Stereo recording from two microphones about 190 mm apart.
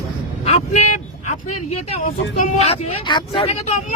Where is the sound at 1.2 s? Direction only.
40° left (ahead or behind).